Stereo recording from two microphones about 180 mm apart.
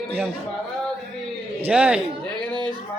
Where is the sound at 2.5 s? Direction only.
25° right (ahead or behind).